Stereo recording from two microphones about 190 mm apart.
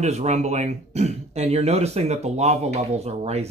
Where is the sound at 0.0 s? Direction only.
35° right (ahead or behind).